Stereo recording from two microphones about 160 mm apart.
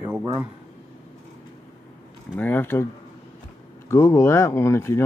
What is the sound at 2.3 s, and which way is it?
Speech, 10° left (ahead or behind).